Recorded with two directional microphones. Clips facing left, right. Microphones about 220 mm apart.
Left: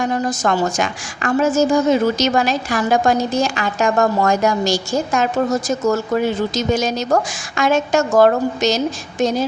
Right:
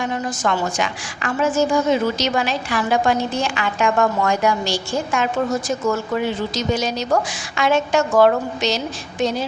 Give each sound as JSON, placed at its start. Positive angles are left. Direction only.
{"t": 0.0, "sound": "a woman's voice", "side_deg": 40}